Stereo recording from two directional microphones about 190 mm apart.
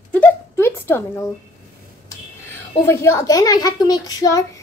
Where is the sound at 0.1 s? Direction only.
10° left (ahead or behind).